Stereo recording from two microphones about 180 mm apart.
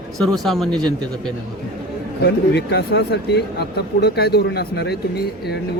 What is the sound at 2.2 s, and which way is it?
Speech, 65° left (ahead or behind).